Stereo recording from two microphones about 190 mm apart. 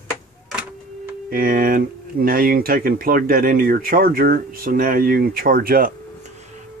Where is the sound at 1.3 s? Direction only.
45° right (ahead or behind).